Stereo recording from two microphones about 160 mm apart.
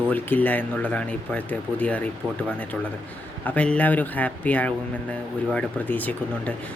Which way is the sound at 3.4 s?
10° left (ahead or behind).